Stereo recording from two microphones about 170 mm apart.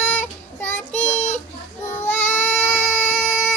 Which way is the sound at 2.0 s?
10° left (ahead or behind).